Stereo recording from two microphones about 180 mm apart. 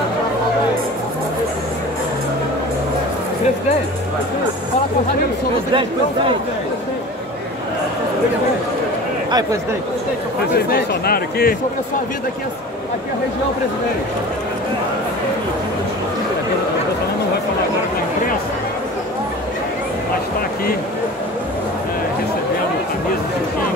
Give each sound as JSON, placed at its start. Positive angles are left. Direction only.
{"t": 10.5, "sound": "speech", "side_deg": 60}